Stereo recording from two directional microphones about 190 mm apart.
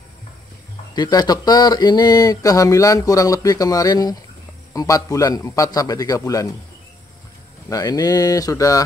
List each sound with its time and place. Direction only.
0.9 s a man's voice: 20° left (ahead or behind)
7.7 s speech: 20° left (ahead or behind)